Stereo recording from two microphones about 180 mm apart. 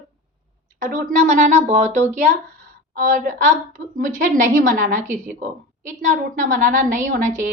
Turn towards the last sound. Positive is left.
turn(degrees=-45)  # may be behind; listen again after turning